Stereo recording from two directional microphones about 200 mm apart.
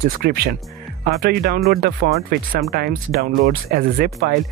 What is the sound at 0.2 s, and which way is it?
Speech, 50° right (ahead or behind).